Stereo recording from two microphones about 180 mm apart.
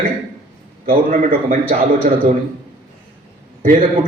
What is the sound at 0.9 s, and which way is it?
Speech, 50° right (ahead or behind).